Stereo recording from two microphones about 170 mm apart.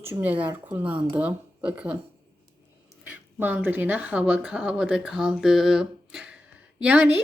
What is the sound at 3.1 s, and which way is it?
A woman's voice, 10° right (ahead or behind).